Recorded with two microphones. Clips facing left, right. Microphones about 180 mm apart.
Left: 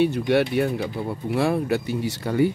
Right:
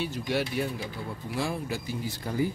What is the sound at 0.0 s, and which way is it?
Speech, 60° left (ahead or behind).